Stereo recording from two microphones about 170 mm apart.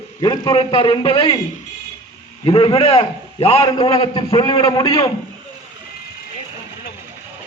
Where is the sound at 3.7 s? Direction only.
25° left (ahead or behind).